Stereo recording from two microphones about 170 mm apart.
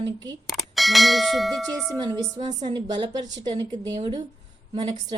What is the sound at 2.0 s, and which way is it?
A woman's voice, 25° right (ahead or behind).